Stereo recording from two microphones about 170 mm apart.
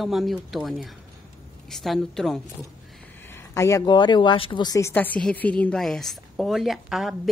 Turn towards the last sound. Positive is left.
turn(degrees=0)  # may be behind; listen again after turning